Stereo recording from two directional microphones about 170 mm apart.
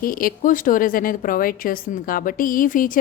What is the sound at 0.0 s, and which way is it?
A woman's voice, 55° left (ahead or behind).